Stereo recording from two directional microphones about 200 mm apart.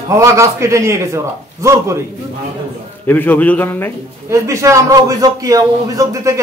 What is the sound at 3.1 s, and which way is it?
Speech, 10° left (ahead or behind).